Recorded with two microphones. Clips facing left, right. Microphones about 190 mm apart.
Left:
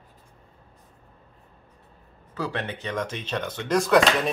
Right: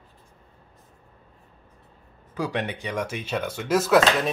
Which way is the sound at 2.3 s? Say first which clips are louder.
Right 2 dB; 15° right (ahead or behind).